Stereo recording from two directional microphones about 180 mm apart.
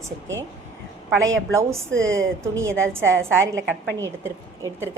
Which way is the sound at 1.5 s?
15° right (ahead or behind).